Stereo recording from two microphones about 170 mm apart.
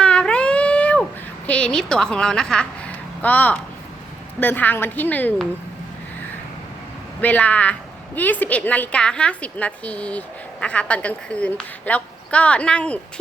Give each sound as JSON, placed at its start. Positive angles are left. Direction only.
{"t": 0.0, "sound": "a sound", "side_deg": 5}
{"t": 1.5, "sound": "a woman's voice", "side_deg": 5}
{"t": 7.2, "sound": "a woman's voice", "side_deg": 10}